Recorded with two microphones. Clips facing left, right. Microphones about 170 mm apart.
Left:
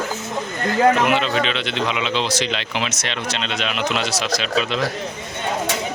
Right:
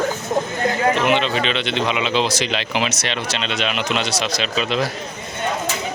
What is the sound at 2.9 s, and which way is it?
Speech, 70° right (ahead or behind).